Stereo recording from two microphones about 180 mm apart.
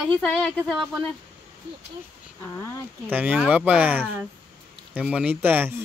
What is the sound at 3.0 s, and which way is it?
Speech, 10° right (ahead or behind).